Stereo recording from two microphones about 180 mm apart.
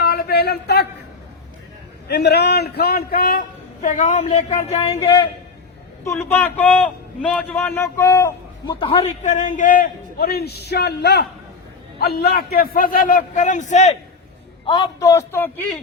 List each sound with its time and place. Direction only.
0.0 s a sound: 60° left (ahead or behind)
2.0 s a man's voice: 65° left (ahead or behind); by 4.9 s 35° left (ahead or behind)
4.9 s a man's voice: 20° left (ahead or behind)
6.1 s a man's voice: 5° left (ahead or behind); by 13.9 s 40° left (ahead or behind)
15.0 s speech: 15° left (ahead or behind)